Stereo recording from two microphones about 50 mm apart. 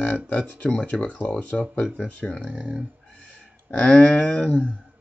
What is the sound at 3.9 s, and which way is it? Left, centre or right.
Speech, left.